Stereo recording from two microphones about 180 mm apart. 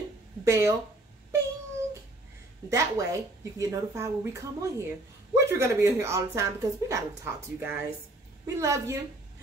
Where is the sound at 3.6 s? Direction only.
15° right (ahead or behind).